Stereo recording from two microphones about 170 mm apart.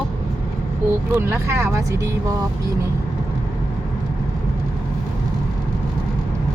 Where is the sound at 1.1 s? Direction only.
15° right (ahead or behind).